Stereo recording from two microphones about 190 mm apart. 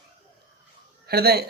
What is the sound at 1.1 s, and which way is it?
Speech, 55° right (ahead or behind).